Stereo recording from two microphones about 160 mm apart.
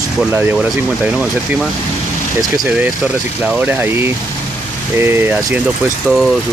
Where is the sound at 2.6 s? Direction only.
10° right (ahead or behind).